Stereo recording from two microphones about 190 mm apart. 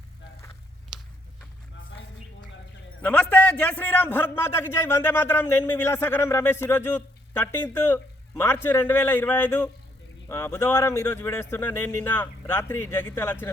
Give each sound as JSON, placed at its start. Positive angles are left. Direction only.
{"t": 3.0, "sound": "a man's voice", "side_deg": 10}